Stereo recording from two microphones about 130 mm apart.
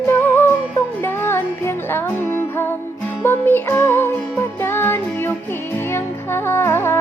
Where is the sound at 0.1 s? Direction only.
15° left (ahead or behind).